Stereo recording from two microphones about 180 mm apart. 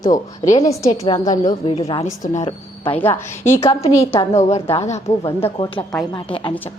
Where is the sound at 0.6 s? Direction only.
20° left (ahead or behind).